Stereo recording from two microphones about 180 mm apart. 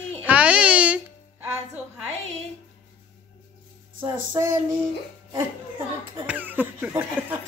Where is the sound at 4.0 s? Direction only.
20° right (ahead or behind).